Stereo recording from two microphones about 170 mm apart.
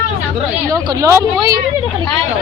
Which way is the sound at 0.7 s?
20° right (ahead or behind).